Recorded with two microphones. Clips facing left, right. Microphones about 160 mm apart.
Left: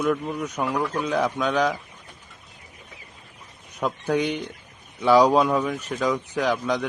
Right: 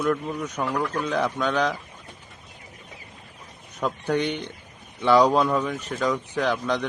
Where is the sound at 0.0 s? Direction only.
5° left (ahead or behind).